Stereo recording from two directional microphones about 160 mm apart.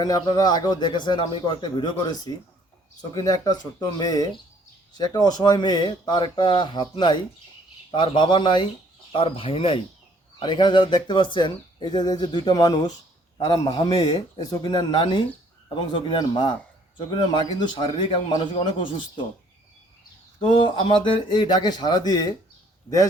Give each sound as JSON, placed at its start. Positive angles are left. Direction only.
{"t": 0.0, "sound": "a man's voice", "side_deg": 25}
{"t": 17.6, "sound": "a man's voice", "side_deg": 30}
{"t": 20.4, "sound": "speech", "side_deg": 30}